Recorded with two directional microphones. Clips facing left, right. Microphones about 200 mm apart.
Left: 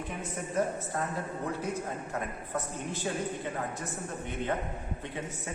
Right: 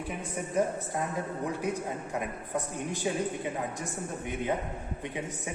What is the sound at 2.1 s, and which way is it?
A man's voice, 15° right (ahead or behind).